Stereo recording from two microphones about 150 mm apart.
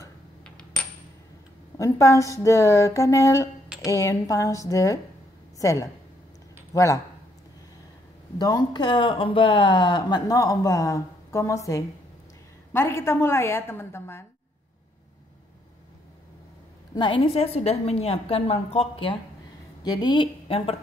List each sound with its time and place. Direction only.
0.4 s coin: 5° left (ahead or behind)
1.8 s speech: 20° left (ahead or behind)
8.4 s a woman's voice: 25° left (ahead or behind)
16.9 s a woman's voice: 35° left (ahead or behind)
19.8 s a woman's voice: 30° left (ahead or behind)